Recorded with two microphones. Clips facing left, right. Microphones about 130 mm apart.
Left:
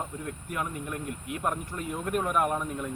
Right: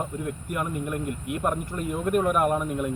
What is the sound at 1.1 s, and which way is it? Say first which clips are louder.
Speech: right 5 dB; 55° right (ahead or behind).